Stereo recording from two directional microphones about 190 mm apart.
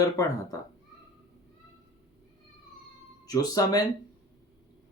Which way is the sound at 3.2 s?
20° left (ahead or behind).